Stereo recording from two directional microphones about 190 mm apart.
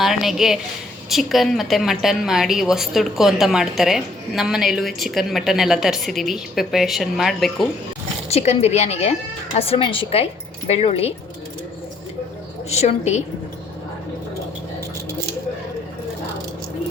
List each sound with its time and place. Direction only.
0.0 s a woman's voice: centre (ahead or behind)
8.3 s speech: 35° left (ahead or behind)
12.7 s speech: 35° left (ahead or behind)